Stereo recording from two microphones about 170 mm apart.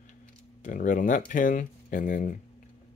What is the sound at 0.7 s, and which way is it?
Speech, 50° left (ahead or behind).